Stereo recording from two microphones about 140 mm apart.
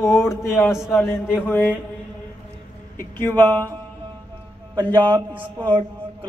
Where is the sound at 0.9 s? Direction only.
20° left (ahead or behind).